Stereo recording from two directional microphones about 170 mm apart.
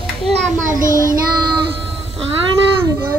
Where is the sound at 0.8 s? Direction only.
55° right (ahead or behind).